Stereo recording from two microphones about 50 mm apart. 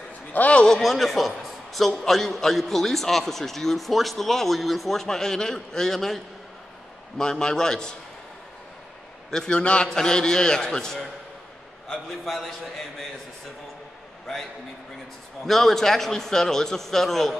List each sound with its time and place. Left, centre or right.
0.3 s a man's voice: left
0.7 s a man's voice: centre
9.3 s a man's voice: centre
15.4 s a man's voice: centre